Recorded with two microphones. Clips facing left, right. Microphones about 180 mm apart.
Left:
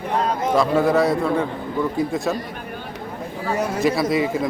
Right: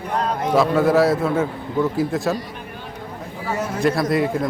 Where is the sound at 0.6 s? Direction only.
Centre (ahead or behind).